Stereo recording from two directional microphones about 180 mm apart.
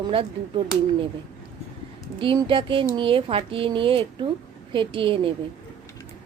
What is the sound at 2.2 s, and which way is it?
A woman's voice, 30° right (ahead or behind).